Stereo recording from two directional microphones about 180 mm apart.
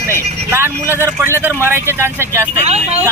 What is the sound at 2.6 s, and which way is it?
Speech, 35° right (ahead or behind).